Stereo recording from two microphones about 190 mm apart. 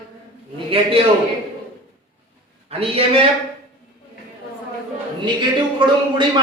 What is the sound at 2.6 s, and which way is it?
Speech, 30° right (ahead or behind).